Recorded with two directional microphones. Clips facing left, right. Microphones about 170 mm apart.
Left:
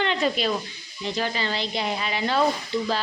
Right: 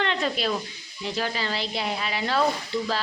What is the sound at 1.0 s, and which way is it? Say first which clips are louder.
A woman's voice: left 1 dB; 5° right (ahead or behind).